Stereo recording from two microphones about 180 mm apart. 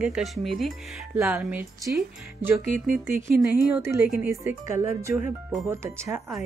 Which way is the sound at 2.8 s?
Centre (ahead or behind).